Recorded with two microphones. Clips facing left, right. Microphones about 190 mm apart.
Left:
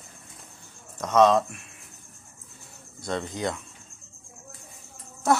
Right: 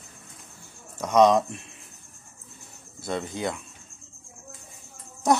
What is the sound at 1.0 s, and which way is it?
Speech, 15° right (ahead or behind).